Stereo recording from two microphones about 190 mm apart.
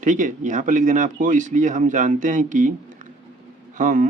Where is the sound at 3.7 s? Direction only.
45° right (ahead or behind).